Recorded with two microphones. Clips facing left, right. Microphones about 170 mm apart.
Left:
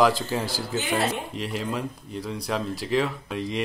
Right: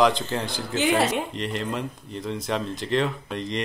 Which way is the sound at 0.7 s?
90° right.